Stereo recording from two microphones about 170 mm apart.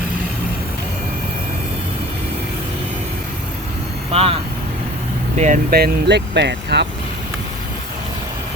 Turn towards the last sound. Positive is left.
turn(degrees=-85)